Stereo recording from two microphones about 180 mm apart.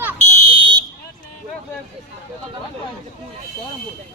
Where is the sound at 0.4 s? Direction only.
25° right (ahead or behind).